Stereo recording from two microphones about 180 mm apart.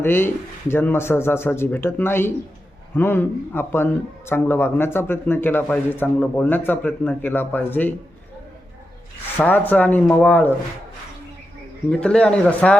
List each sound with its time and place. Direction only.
0.0 s speech: 10° left (ahead or behind)
9.4 s speech: 10° left (ahead or behind)
11.9 s a man's voice: 5° left (ahead or behind)